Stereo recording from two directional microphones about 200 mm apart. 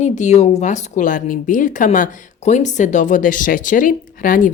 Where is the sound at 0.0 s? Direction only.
35° left (ahead or behind).